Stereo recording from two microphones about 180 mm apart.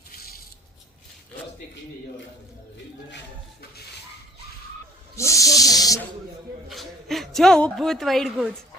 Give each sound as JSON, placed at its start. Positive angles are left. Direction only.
{"t": 0.1, "sound": "a sound", "side_deg": 60}
{"t": 5.1, "sound": "snake", "side_deg": 15}
{"t": 6.7, "sound": "speech", "side_deg": 0}